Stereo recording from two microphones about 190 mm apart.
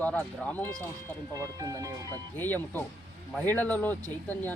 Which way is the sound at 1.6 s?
20° right (ahead or behind).